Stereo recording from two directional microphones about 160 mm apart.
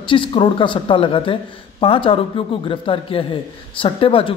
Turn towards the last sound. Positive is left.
turn(degrees=35)  # may be behind; listen again after turning